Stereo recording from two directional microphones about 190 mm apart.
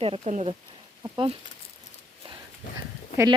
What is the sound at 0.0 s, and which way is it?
Speech, 35° right (ahead or behind).